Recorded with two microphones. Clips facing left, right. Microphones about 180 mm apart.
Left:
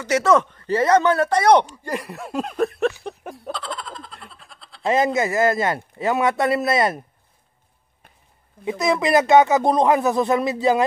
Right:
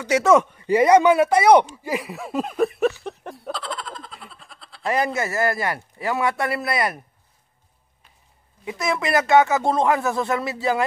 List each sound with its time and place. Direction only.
0.0 s speech: 10° right (ahead or behind)
1.8 s a sound: 5° right (ahead or behind)
4.8 s speech: 20° left (ahead or behind)
8.6 s speech: 20° left (ahead or behind)